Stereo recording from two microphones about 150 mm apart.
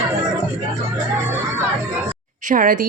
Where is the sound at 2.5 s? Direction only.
65° right (ahead or behind).